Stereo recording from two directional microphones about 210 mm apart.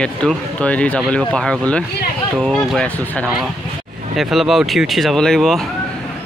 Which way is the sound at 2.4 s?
Centre (ahead or behind).